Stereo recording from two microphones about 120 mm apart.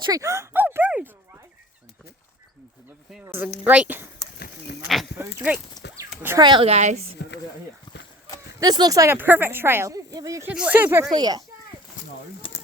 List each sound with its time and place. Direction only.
0.0 s a sound: 30° right (ahead or behind); by 1.1 s 10° right (ahead or behind)
3.2 s a woman's voice: 15° right (ahead or behind)
5.1 s speech: 15° right (ahead or behind)
6.0 s a sound: 25° right (ahead or behind)
6.4 s a child's voice: 40° right (ahead or behind)
6.7 s a woman's voice: 70° right (ahead or behind)
8.6 s speech: 30° right (ahead or behind)
9.1 s speech: 15° right (ahead or behind)
10.5 s a woman's voice: 10° right (ahead or behind)
11.0 s a child's voice: 35° right (ahead or behind)